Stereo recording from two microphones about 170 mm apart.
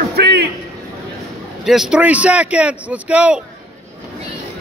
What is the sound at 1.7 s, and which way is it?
Speech, 5° right (ahead or behind).